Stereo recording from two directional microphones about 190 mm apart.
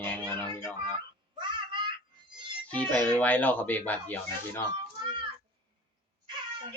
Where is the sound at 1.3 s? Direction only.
25° right (ahead or behind).